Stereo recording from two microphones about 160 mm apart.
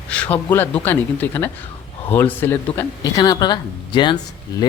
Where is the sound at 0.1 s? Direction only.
10° left (ahead or behind).